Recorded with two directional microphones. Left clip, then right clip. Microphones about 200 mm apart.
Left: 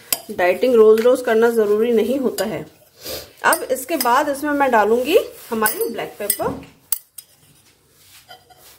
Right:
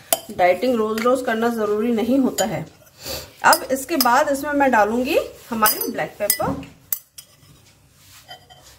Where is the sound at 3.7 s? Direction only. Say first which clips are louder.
Even; 40° left (ahead or behind).